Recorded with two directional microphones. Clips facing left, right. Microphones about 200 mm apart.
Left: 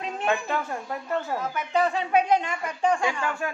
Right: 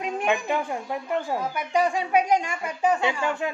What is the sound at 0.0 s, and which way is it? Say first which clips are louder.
A woman's voice: right 2 dB; 15° right (ahead or behind).